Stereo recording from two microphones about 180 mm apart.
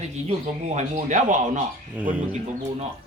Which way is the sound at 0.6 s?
40° right (ahead or behind).